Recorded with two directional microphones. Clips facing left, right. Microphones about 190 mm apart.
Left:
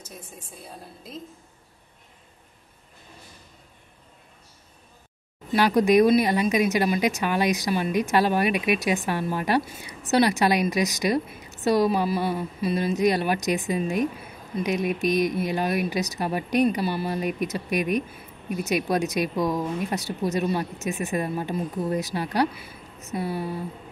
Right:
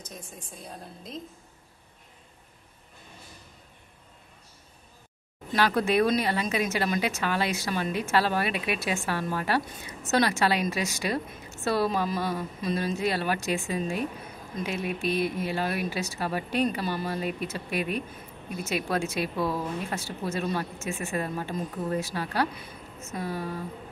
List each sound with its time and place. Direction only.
0.7 s a woman's voice: 5° left (ahead or behind)
5.5 s speech: 15° left (ahead or behind)